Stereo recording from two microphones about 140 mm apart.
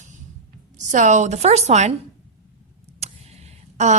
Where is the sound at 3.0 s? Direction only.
50° right (ahead or behind).